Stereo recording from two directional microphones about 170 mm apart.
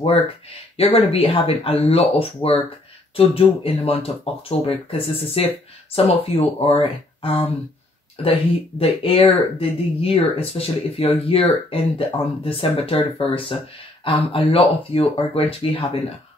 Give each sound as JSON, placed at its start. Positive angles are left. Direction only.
{"t": 0.7, "sound": "speech", "side_deg": 35}